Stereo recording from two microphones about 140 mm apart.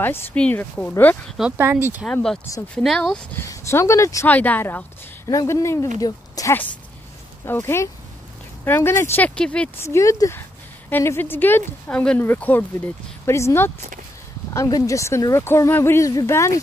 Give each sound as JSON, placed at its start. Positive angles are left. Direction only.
{"t": 0.0, "sound": "speech", "side_deg": 15}
{"t": 1.2, "sound": "speech", "side_deg": 0}
{"t": 1.6, "sound": "speech", "side_deg": -15}
{"t": 2.0, "sound": "speech", "side_deg": 5}
{"t": 3.3, "sound": "speech", "side_deg": 20}
{"t": 9.8, "sound": "speech", "side_deg": 20}